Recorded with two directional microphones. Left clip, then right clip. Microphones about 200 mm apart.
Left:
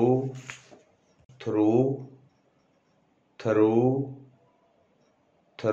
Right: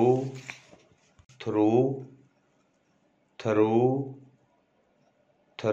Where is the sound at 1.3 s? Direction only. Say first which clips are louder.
Even; 20° right (ahead or behind).